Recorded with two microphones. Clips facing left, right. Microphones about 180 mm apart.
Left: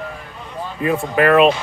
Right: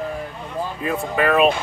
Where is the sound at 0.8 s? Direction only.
65° left (ahead or behind).